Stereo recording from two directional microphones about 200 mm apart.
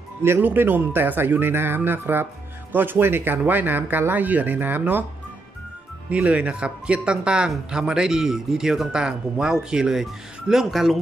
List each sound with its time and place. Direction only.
0.2 s speech: 10° right (ahead or behind)
6.0 s speech: 5° right (ahead or behind)